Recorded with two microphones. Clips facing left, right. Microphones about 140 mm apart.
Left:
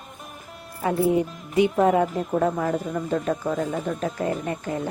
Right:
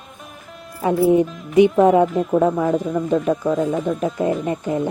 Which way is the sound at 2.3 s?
15° right (ahead or behind).